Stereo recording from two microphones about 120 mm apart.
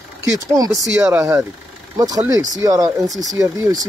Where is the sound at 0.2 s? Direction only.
30° right (ahead or behind).